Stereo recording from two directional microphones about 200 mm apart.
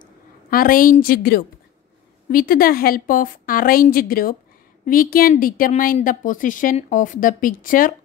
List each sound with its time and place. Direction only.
0.0 s a woman's voice: 45° left (ahead or behind)